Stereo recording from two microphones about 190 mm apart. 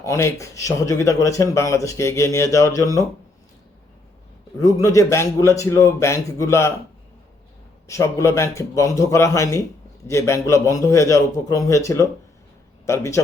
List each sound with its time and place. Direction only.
0.0 s speech: 15° left (ahead or behind)
4.5 s speech: 15° left (ahead or behind)
7.9 s a man's voice: 15° left (ahead or behind)